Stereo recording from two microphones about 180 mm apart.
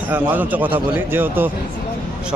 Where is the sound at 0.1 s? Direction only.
10° right (ahead or behind).